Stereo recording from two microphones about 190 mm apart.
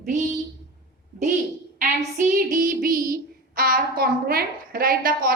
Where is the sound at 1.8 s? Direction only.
45° right (ahead or behind).